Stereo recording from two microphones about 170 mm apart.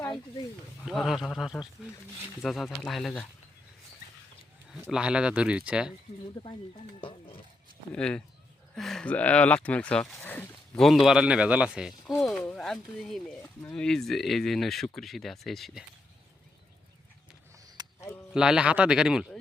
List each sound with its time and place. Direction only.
0.9 s speech: centre (ahead or behind)
4.7 s speech: 5° right (ahead or behind)
7.0 s speech: 30° left (ahead or behind)
7.9 s speech: 5° left (ahead or behind)
10.8 s speech: centre (ahead or behind)
17.8 s a sound: 25° right (ahead or behind)
18.3 s speech: 5° right (ahead or behind)